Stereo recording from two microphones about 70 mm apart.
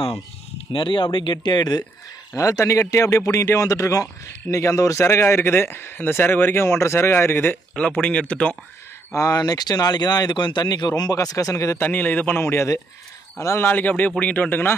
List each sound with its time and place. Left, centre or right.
1.3 s speech: left
2.3 s a man's voice: left
5.0 s speech: left
7.7 s a man's voice: centre
9.1 s speech: left
9.4 s speech: left
11.8 s a man's voice: left
13.6 s a man's voice: left